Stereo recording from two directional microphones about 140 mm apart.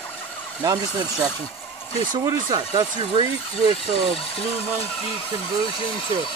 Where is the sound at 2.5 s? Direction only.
35° right (ahead or behind).